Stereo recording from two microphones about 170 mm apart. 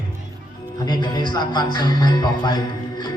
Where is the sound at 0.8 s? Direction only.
25° left (ahead or behind).